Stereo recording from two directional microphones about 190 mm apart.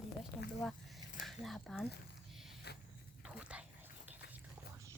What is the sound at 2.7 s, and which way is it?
Dog, 60° left (ahead or behind).